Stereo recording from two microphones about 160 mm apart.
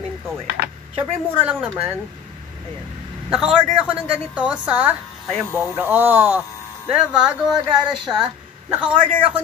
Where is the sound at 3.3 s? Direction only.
5° right (ahead or behind).